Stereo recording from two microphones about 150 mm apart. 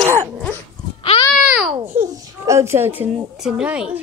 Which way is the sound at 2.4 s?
20° right (ahead or behind).